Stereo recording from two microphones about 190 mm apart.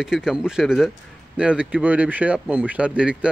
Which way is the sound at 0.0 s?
5° right (ahead or behind).